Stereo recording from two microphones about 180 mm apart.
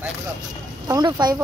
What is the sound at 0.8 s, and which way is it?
Speech, 25° right (ahead or behind).